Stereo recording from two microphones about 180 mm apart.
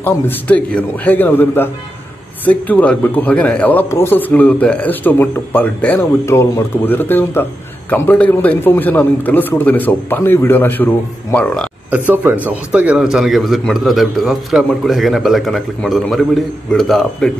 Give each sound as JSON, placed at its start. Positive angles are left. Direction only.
{"t": 0.0, "sound": "a man's voice", "side_deg": 10}
{"t": 11.9, "sound": "a man's voice", "side_deg": -10}